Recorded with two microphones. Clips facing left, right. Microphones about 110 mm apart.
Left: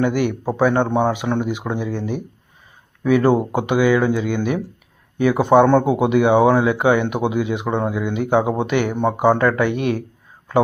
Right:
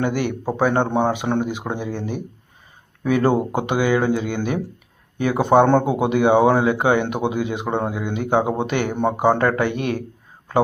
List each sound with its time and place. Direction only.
0.0 s speech: 30° right (ahead or behind)
3.0 s speech: 35° right (ahead or behind)